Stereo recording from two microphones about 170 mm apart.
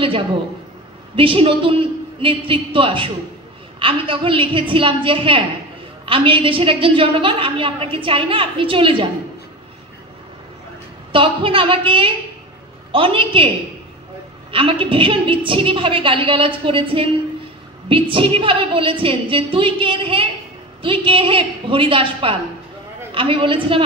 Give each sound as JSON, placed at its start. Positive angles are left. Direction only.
{"t": 1.1, "sound": "a woman's voice", "side_deg": -30}
{"t": 11.1, "sound": "a woman's voice", "side_deg": -30}
{"t": 14.5, "sound": "a woman's voice", "side_deg": -30}
{"t": 18.1, "sound": "a woman's voice", "side_deg": -30}